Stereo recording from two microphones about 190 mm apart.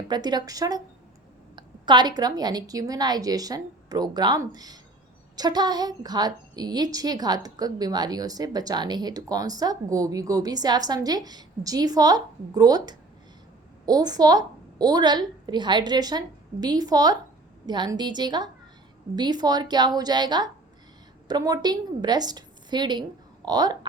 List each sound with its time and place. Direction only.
0.1 s a woman's voice: 20° right (ahead or behind)